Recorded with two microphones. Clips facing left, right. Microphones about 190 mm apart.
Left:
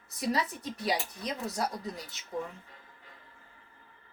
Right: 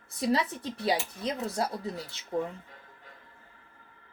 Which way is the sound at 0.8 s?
25° right (ahead or behind).